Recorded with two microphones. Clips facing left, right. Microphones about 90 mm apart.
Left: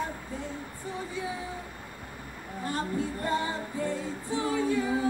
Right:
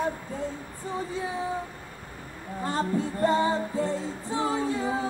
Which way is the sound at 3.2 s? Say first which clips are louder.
Right 10 dB; 25° right (ahead or behind).